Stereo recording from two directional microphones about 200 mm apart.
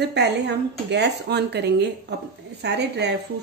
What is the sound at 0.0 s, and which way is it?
Speech, 60° right (ahead or behind).